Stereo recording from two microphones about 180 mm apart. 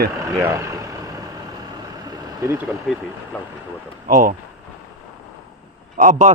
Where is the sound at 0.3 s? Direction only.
15° right (ahead or behind).